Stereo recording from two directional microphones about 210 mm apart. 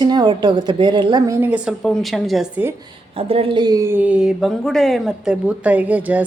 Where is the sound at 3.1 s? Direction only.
25° right (ahead or behind); by 6.3 s 10° right (ahead or behind).